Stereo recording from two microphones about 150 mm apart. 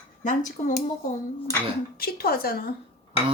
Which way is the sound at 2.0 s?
85° left.